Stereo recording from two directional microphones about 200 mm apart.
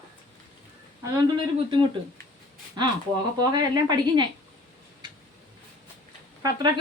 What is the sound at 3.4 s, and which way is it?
Speech, 20° right (ahead or behind).